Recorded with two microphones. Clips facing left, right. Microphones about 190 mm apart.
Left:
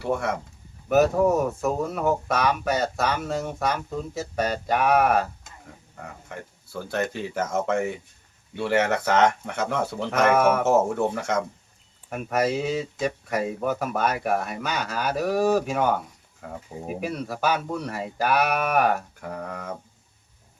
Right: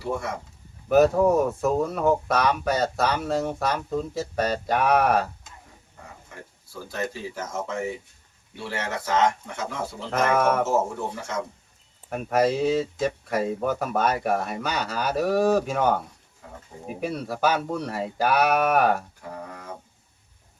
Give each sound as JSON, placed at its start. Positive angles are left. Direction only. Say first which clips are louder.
{"t": 0.0, "sound": "speech", "louder": "left 3 dB", "side_deg": 65}
{"t": 0.9, "sound": "speech", "louder": "right 1 dB", "side_deg": 5}
{"t": 6.3, "sound": "speech", "louder": "left 6 dB", "side_deg": 70}
{"t": 10.1, "sound": "speech", "louder": "left 2 dB", "side_deg": 5}
{"t": 10.7, "sound": "speech", "louder": "left 4 dB", "side_deg": 65}
{"t": 12.1, "sound": "speech", "louder": "right 2 dB", "side_deg": 0}
{"t": 17.0, "sound": "speech", "louder": "right 3 dB", "side_deg": 0}
{"t": 19.3, "sound": "speech", "louder": "left 4 dB", "side_deg": 70}